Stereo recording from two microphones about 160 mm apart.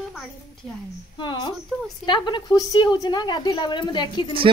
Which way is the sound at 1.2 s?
30° left (ahead or behind).